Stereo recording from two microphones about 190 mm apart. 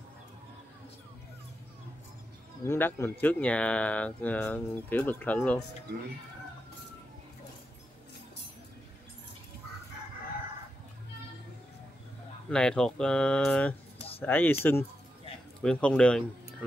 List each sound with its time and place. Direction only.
2.6 s speech: 15° left (ahead or behind)
12.4 s speech: 5° left (ahead or behind)
13.9 s a sound: 30° left (ahead or behind)
14.2 s speech: 10° left (ahead or behind)